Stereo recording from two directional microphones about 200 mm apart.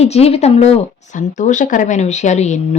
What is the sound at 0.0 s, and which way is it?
Speech, 30° left (ahead or behind).